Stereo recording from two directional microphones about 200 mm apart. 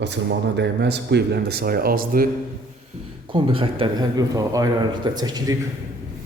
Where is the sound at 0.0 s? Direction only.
60° right (ahead or behind).